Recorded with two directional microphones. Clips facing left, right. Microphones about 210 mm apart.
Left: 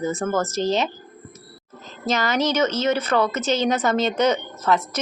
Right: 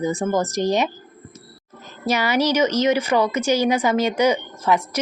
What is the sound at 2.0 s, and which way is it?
A woman's voice, 10° right (ahead or behind).